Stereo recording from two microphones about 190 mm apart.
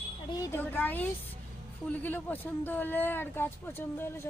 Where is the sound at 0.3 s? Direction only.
15° left (ahead or behind).